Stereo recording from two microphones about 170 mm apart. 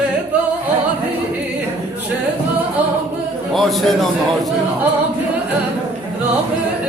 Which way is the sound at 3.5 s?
Centre (ahead or behind).